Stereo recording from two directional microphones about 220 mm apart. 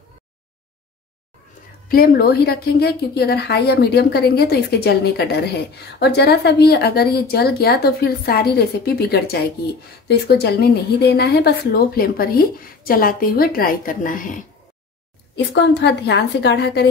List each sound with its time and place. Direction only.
1.9 s a woman's voice: 40° left (ahead or behind)
15.3 s a woman's voice: 50° left (ahead or behind)